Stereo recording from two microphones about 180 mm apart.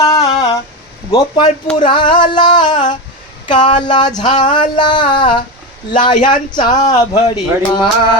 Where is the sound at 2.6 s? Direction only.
45° left (ahead or behind).